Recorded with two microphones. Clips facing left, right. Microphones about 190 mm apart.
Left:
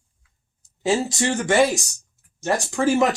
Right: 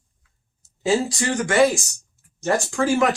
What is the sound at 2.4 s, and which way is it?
Speech, 15° left (ahead or behind).